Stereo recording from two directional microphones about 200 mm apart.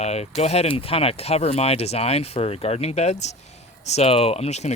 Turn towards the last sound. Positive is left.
turn(degrees=35)  # may be behind; listen again after turning